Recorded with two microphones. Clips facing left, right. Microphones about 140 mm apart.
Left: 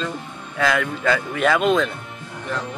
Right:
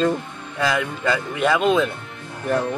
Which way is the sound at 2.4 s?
60° right (ahead or behind).